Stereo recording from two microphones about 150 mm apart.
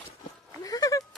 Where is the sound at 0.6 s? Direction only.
25° left (ahead or behind).